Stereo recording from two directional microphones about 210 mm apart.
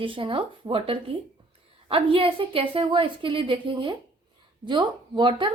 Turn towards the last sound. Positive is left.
turn(degrees=-25)  # may be behind; listen again after turning